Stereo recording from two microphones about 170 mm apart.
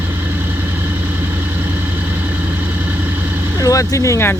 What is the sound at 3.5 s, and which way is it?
Speech, 20° left (ahead or behind).